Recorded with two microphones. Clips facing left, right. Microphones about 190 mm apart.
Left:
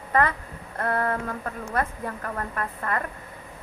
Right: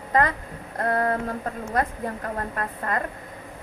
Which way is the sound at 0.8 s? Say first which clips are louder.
Right 2 dB; 35° right (ahead or behind).